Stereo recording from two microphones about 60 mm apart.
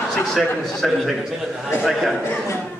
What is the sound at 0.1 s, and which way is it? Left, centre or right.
A man's voice, centre.